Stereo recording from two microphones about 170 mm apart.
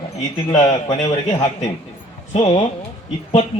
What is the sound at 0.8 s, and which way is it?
Speech, 20° left (ahead or behind).